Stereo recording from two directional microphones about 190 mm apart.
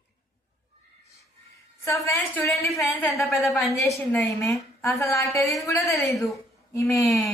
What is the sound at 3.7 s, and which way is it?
A woman's voice, 15° left (ahead or behind).